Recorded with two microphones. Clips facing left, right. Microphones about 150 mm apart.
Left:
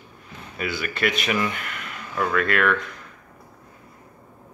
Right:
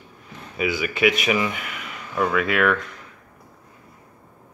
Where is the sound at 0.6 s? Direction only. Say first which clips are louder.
Right 5 dB; 5° right (ahead or behind).